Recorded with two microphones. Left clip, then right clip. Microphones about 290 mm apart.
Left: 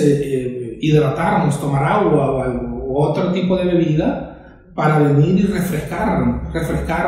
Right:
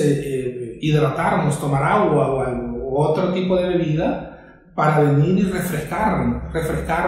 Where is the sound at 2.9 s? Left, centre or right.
Centre.